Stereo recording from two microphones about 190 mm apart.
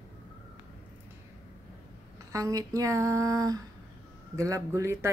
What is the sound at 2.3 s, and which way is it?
Speech, 15° right (ahead or behind).